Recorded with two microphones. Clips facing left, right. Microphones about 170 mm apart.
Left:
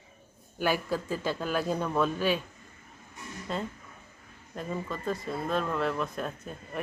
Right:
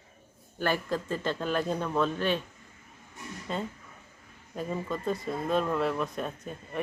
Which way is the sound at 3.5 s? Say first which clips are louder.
Even; centre (ahead or behind).